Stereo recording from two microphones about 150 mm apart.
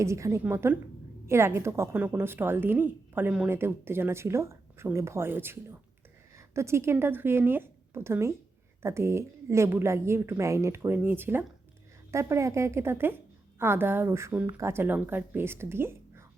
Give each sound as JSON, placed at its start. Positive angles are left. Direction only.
{"t": 0.0, "sound": "a woman's voice", "side_deg": -20}